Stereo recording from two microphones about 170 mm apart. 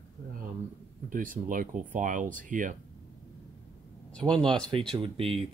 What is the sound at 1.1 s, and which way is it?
Speech, 55° right (ahead or behind).